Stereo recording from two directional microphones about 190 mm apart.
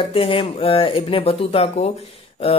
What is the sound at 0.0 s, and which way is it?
A man's voice, 30° left (ahead or behind).